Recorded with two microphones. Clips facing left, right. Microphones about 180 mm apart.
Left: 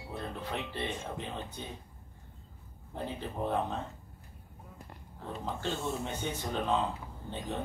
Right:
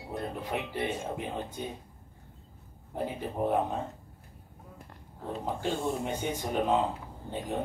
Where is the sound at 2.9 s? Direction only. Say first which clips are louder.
Right 4 dB; 15° right (ahead or behind).